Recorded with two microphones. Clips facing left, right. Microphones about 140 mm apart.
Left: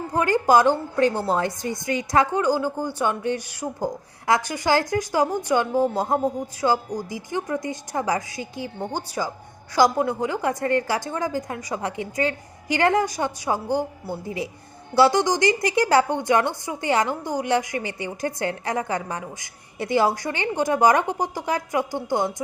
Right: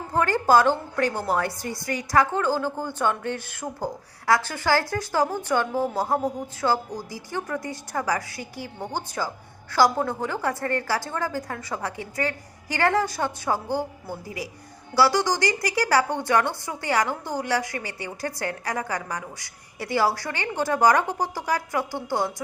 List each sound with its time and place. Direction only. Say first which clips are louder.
0.1 s a woman's voice: left 1 dB; 15° left (ahead or behind)